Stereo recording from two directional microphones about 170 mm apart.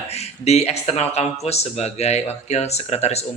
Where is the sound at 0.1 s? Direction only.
40° left (ahead or behind).